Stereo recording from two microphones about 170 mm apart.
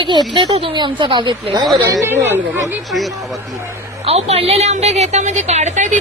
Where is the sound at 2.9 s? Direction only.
Centre (ahead or behind).